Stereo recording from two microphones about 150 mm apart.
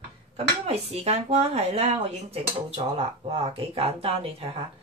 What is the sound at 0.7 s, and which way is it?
A woman's voice, 45° right (ahead or behind).